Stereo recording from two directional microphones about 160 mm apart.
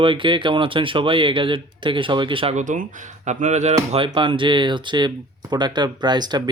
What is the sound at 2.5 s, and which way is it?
Speech, 50° right (ahead or behind).